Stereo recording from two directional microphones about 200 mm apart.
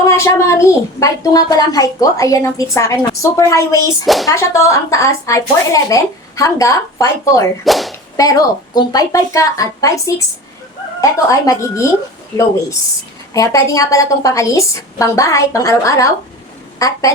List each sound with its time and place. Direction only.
0.0 s a woman's voice: 15° left (ahead or behind)
4.0 s speech: centre (ahead or behind)
4.3 s a woman's voice: 15° left (ahead or behind)
7.6 s speech: centre (ahead or behind)
8.1 s a woman's voice: 20° left (ahead or behind)
13.3 s a woman's voice: 15° left (ahead or behind)